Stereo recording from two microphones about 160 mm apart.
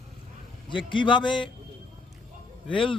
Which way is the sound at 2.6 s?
30° left (ahead or behind).